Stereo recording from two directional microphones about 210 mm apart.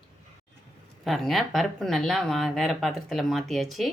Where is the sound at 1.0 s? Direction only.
Centre (ahead or behind).